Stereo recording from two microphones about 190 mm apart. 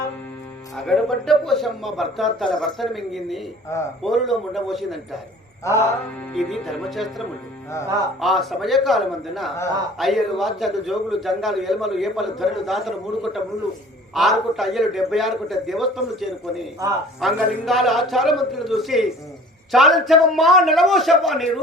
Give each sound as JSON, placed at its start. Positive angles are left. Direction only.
{"t": 0.8, "sound": "a man's voice", "side_deg": 0}
{"t": 5.6, "sound": "mantra", "side_deg": 15}
{"t": 6.3, "sound": "a man's voice", "side_deg": 0}